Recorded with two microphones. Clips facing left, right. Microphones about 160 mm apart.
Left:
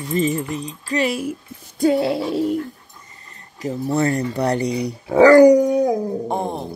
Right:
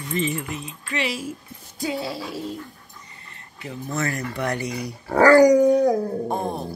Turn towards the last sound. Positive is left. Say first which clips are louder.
# left 2 dB
turn(degrees=20)  # may be behind; listen again after turning